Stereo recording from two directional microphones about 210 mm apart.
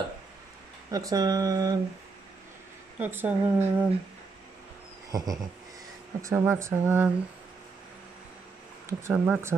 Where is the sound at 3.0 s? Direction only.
10° right (ahead or behind).